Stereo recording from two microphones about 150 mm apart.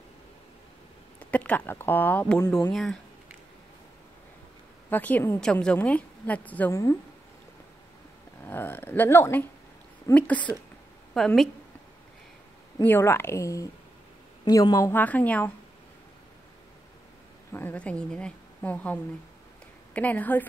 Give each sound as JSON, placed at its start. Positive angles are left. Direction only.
{"t": 1.2, "sound": "a woman's voice", "side_deg": 10}
{"t": 2.7, "sound": "speech", "side_deg": 0}
{"t": 4.8, "sound": "a woman's voice", "side_deg": 10}
{"t": 8.5, "sound": "a woman's voice", "side_deg": 15}
{"t": 12.8, "sound": "a woman's voice", "side_deg": 15}
{"t": 17.5, "sound": "a woman's voice", "side_deg": 15}